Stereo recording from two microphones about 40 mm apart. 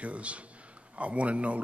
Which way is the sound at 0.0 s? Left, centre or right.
Right.